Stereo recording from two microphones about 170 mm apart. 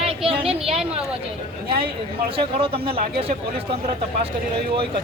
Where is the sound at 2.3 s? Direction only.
35° right (ahead or behind).